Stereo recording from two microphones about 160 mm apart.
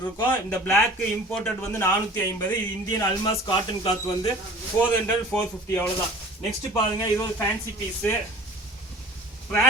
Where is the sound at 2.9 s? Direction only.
25° left (ahead or behind).